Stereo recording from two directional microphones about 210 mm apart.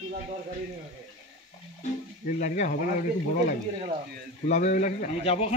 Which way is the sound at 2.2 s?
35° left (ahead or behind).